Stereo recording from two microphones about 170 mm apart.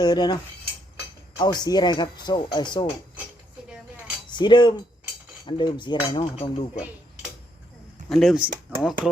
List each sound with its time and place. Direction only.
0.0 s speech: 25° left (ahead or behind)
1.4 s speech: 25° left (ahead or behind)
4.3 s speech: 25° left (ahead or behind)
8.1 s speech: centre (ahead or behind)